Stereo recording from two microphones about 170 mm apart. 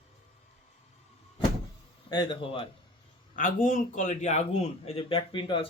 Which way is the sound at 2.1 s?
25° left (ahead or behind).